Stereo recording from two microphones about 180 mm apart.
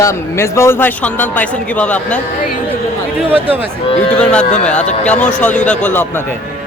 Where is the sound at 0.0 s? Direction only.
15° left (ahead or behind).